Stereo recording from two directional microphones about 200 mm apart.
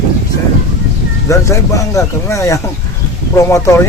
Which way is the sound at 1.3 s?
15° left (ahead or behind).